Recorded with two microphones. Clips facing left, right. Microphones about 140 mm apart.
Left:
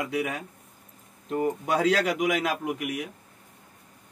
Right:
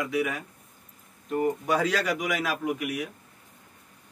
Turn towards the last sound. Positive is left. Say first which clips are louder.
# right 1 dB
turn(degrees=15)  # may be behind; listen again after turning